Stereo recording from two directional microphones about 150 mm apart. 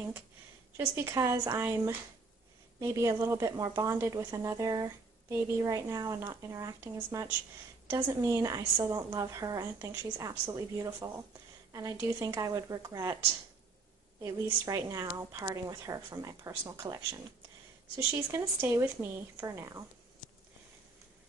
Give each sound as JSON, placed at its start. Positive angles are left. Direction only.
{"t": 0.7, "sound": "a woman's voice", "side_deg": -20}
{"t": 18.6, "sound": "a woman's voice", "side_deg": -15}